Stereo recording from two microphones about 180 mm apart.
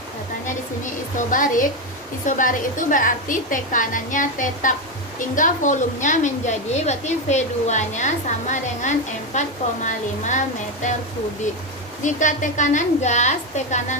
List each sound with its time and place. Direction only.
1.3 s a woman's voice: 45° left (ahead or behind)
12.0 s a woman's voice: 45° left (ahead or behind)